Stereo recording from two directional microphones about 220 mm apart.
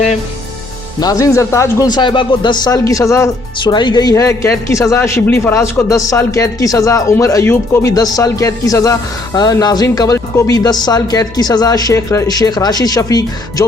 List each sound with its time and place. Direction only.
0.9 s speech: 15° left (ahead or behind)